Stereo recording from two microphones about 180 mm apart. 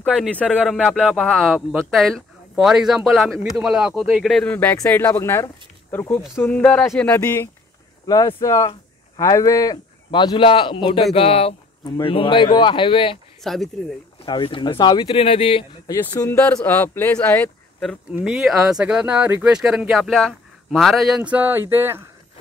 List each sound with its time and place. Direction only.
0.2 s speech: 5° left (ahead or behind); by 13.2 s 30° left (ahead or behind)
13.4 s speech: centre (ahead or behind)
14.2 s speech: 25° left (ahead or behind)
15.9 s speech: 20° left (ahead or behind)
18.1 s speech: 5° right (ahead or behind)